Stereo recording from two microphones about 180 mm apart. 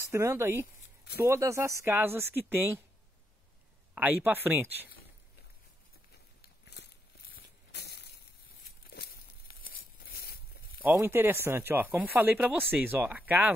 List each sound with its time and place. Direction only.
0.0 s speech: 15° right (ahead or behind)
3.9 s speech: 10° right (ahead or behind)
6.4 s a sound: 65° left (ahead or behind)
10.8 s speech: 10° right (ahead or behind)